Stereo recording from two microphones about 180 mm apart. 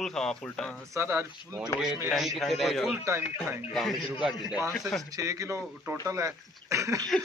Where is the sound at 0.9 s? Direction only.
15° right (ahead or behind).